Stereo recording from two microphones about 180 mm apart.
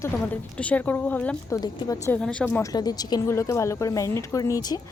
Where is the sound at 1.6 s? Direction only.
20° left (ahead or behind).